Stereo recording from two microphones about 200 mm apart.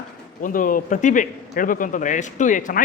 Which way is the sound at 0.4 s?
45° left (ahead or behind).